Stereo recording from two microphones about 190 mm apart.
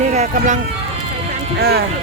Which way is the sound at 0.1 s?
40° right (ahead or behind).